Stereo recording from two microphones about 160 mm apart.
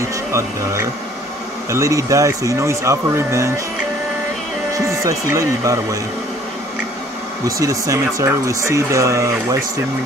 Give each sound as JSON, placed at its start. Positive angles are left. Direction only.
{"t": 0.0, "sound": "speech", "side_deg": -15}
{"t": 4.7, "sound": "speech", "side_deg": -20}
{"t": 7.4, "sound": "speech", "side_deg": -20}